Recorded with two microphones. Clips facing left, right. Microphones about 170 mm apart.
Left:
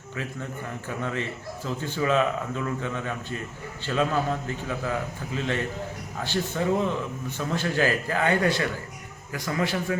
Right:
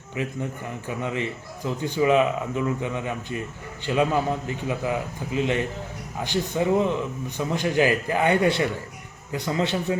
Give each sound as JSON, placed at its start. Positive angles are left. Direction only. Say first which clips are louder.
{"t": 0.2, "sound": "a man's voice", "louder": "right 5 dB", "side_deg": -15}